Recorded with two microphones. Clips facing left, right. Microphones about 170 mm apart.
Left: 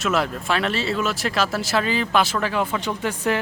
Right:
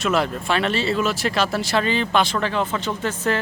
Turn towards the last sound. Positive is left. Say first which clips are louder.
# even
turn(degrees=10)  # may be behind; listen again after turning